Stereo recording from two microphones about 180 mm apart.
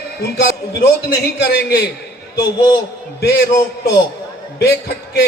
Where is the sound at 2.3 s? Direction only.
20° left (ahead or behind).